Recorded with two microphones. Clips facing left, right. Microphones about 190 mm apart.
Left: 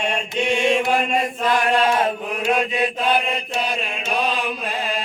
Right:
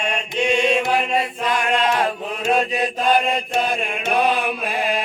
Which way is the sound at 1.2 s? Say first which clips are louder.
Left 2 dB; 40° left (ahead or behind).